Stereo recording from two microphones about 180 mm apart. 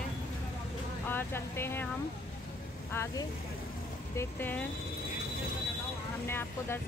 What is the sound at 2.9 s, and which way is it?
Speech, 15° left (ahead or behind).